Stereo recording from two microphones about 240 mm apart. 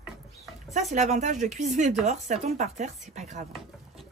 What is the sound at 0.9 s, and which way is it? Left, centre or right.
Speech, right.